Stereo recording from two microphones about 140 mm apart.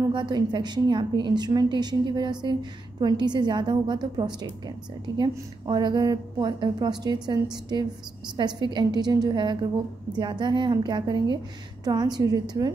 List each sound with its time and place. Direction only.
0.1 s a woman's voice: 30° right (ahead or behind)